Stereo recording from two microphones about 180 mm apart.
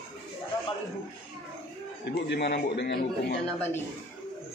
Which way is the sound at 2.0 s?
70° left (ahead or behind).